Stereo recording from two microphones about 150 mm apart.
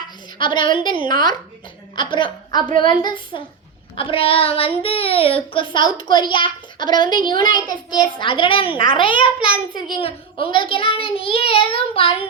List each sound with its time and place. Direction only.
0.3 s a woman's voice: 30° left (ahead or behind)